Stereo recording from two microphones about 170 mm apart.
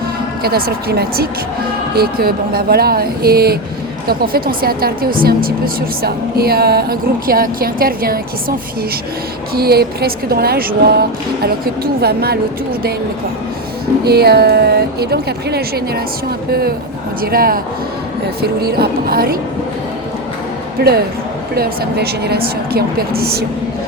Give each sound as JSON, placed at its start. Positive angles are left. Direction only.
{"t": 0.4, "sound": "a woman's voice", "side_deg": -65}
{"t": 9.6, "sound": "a woman's voice", "side_deg": -65}
{"t": 14.0, "sound": "a woman's voice", "side_deg": -70}
{"t": 20.7, "sound": "a woman's voice", "side_deg": -65}